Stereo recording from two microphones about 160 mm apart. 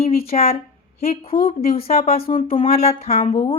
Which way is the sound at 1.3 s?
65° left (ahead or behind).